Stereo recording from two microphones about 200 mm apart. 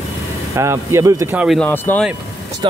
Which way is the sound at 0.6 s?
15° right (ahead or behind).